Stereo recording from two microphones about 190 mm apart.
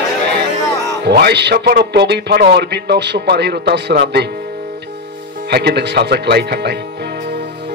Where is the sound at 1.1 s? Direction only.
60° right (ahead or behind).